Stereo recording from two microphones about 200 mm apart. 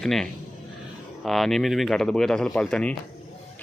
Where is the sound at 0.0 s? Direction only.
Centre (ahead or behind).